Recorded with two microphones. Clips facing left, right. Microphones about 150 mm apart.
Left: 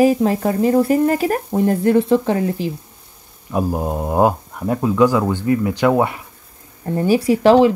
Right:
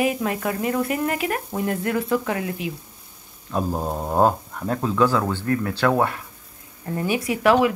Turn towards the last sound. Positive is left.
turn(degrees=30)  # may be behind; listen again after turning